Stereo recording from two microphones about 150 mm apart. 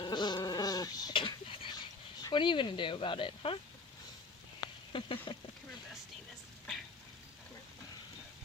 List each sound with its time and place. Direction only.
0.0 s goat: 30° left (ahead or behind)
2.2 s speech: 30° left (ahead or behind)
4.9 s a sound: 35° left (ahead or behind)